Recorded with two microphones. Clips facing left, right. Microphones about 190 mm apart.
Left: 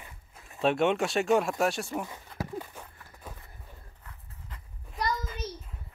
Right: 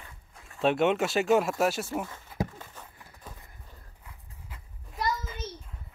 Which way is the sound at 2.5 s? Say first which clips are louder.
Left 8 dB; 15° left (ahead or behind).